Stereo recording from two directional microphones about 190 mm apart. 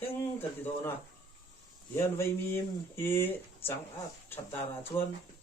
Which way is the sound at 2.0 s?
15° left (ahead or behind).